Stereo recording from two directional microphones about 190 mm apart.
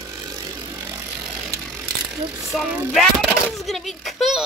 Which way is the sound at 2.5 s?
Centre (ahead or behind).